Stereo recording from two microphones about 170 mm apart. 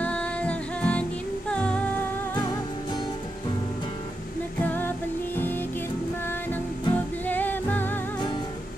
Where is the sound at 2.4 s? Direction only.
20° left (ahead or behind).